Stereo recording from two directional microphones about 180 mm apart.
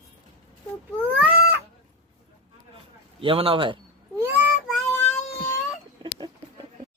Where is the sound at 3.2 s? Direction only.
30° right (ahead or behind).